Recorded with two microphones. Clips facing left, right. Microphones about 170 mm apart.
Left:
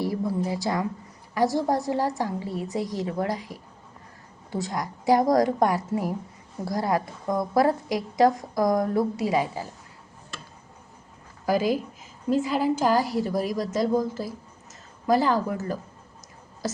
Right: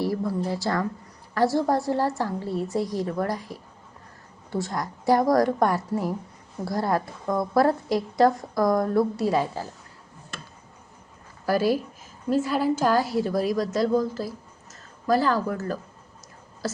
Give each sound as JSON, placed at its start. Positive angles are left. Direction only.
{"t": 0.0, "sound": "a sound", "side_deg": 20}
{"t": 1.3, "sound": "a woman's voice", "side_deg": 15}
{"t": 11.4, "sound": "a woman's voice", "side_deg": 15}